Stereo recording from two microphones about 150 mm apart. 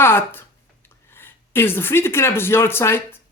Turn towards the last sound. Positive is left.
turn(degrees=15)  # may be behind; listen again after turning